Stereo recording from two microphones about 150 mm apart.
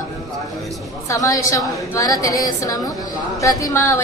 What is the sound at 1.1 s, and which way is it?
A woman's voice, 20° left (ahead or behind).